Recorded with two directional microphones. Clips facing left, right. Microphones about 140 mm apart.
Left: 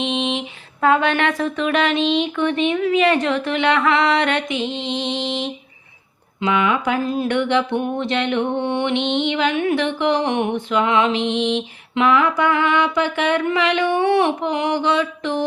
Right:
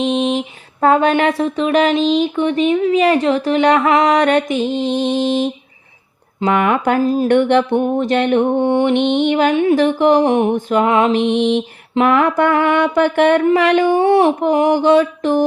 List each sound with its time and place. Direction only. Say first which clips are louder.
0.0 s a sound: right 6 dB; 40° right (ahead or behind)
2.2 s speech: right 4 dB; 30° right (ahead or behind)
6.4 s mantra: right 4 dB; 50° right (ahead or behind)
7.0 s mantra: right 7 dB; 40° right (ahead or behind)